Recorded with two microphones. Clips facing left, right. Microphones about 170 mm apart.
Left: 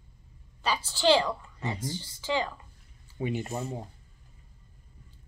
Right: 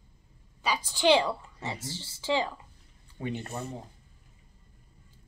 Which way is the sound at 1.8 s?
25° right (ahead or behind).